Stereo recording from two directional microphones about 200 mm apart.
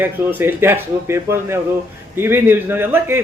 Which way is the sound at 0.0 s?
10° right (ahead or behind).